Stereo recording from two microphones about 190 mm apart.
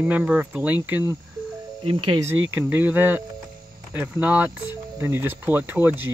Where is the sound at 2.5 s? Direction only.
10° right (ahead or behind).